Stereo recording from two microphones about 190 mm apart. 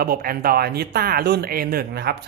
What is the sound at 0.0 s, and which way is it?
Speech, 50° right (ahead or behind).